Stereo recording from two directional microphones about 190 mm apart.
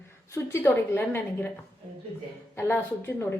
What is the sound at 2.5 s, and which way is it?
Speech, 10° left (ahead or behind).